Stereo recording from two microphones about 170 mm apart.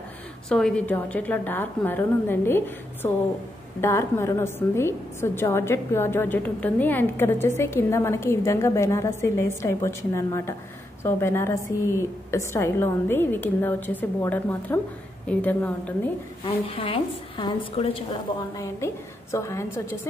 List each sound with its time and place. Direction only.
0.5 s a woman's voice: 5° left (ahead or behind)
16.4 s a woman's voice: 35° left (ahead or behind)
18.1 s a woman's voice: 20° left (ahead or behind)